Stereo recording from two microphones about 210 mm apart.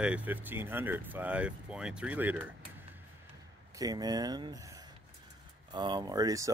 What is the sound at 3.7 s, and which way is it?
Speech, 20° right (ahead or behind).